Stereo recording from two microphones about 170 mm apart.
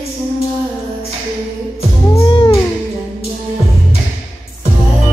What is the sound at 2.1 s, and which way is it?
Music, 25° left (ahead or behind).